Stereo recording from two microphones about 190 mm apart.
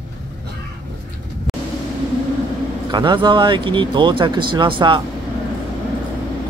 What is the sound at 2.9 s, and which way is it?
Speech, 25° right (ahead or behind).